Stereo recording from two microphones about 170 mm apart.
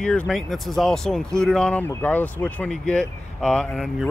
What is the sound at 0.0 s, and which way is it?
Speech, 5° left (ahead or behind).